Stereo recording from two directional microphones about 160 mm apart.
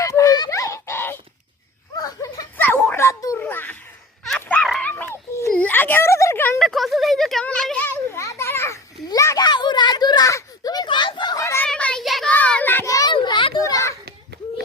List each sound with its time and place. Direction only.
0.0 s a sound: 20° left (ahead or behind)
6.6 s children playing: centre (ahead or behind); by 11.7 s 15° left (ahead or behind)
11.7 s child singing: 5° left (ahead or behind)
13.1 s children playing: 30° left (ahead or behind)